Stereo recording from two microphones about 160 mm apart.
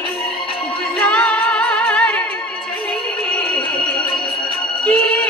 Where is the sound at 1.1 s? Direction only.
5° left (ahead or behind).